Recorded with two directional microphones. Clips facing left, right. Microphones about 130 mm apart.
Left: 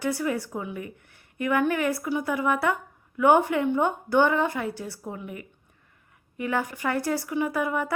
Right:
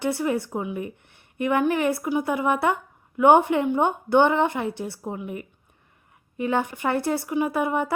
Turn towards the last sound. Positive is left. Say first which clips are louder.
# right 3 dB
turn(degrees=-25)  # may be behind; listen again after turning